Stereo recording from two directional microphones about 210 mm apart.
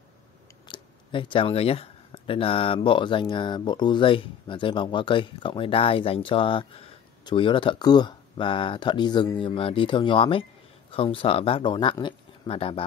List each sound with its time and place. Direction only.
0.7 s speech: 25° left (ahead or behind)